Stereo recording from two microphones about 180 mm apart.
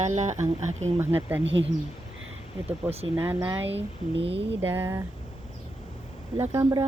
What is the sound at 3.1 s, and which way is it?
Speech, 10° right (ahead or behind).